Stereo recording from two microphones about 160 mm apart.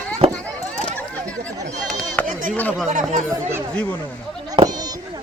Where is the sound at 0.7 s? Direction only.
10° left (ahead or behind).